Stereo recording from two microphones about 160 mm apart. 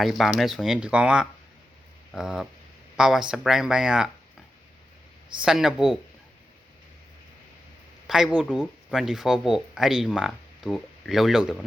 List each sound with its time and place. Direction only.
0.0 s speech: centre (ahead or behind)
5.4 s speech: 5° right (ahead or behind)
8.0 s speech: 5° right (ahead or behind)